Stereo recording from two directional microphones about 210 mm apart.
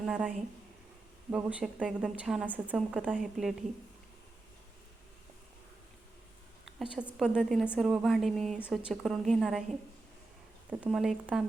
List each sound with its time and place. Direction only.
0.0 s a woman's voice: 5° right (ahead or behind)
6.9 s a woman's voice: 5° right (ahead or behind)
10.7 s a woman's voice: 5° right (ahead or behind)